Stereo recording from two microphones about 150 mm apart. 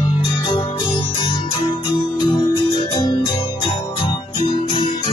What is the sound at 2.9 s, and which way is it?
Music, 25° left (ahead or behind).